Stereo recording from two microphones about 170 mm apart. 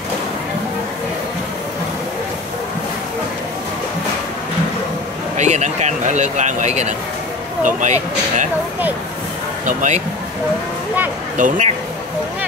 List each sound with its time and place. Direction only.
5.4 s speech: 45° right (ahead or behind)
9.7 s speech: 45° right (ahead or behind)
11.3 s speech: 45° right (ahead or behind)